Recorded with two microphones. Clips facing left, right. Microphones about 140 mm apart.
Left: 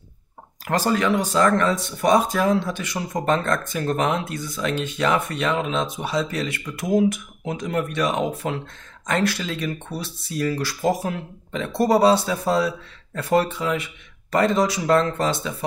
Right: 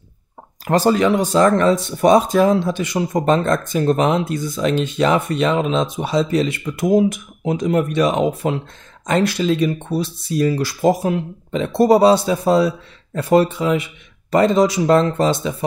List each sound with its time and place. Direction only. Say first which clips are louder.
0.7 s speech: right 6 dB; 25° right (ahead or behind)